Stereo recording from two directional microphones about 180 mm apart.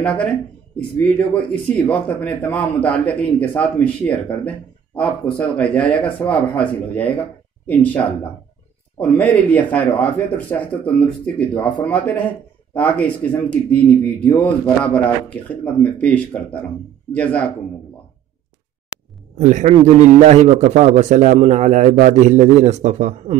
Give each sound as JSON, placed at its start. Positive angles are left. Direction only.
{"t": 0.0, "sound": "speech", "side_deg": 5}
{"t": 19.3, "sound": "a man's voice", "side_deg": -40}